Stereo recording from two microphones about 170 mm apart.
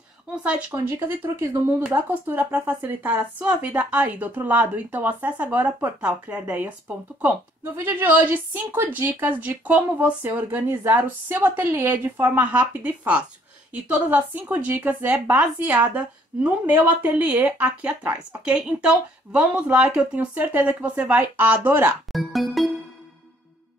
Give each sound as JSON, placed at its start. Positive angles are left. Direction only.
{"t": 0.4, "sound": "speech", "side_deg": -5}
{"t": 22.1, "sound": "music", "side_deg": 0}